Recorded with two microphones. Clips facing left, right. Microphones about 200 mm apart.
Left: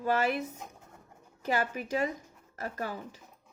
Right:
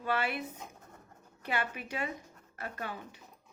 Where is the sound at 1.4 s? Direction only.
40° left (ahead or behind).